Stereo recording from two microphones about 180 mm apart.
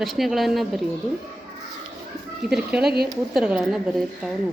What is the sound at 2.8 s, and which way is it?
Speech, 60° right (ahead or behind).